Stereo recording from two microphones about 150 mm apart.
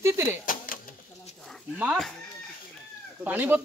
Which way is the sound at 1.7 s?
10° right (ahead or behind).